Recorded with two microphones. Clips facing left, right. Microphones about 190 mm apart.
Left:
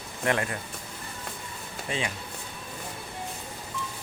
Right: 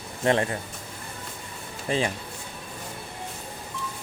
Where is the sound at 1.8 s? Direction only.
35° right (ahead or behind).